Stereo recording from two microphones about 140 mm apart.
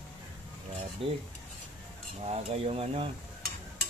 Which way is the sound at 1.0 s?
40° right (ahead or behind).